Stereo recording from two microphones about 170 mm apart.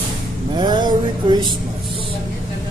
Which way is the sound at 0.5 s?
25° right (ahead or behind).